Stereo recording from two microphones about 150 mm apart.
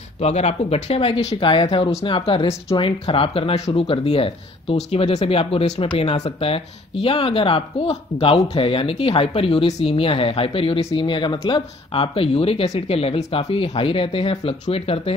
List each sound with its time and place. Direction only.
0.2 s speech: 45° left (ahead or behind)